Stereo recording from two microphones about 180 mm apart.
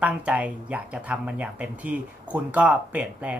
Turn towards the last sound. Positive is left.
turn(degrees=-10)  # may be behind; listen again after turning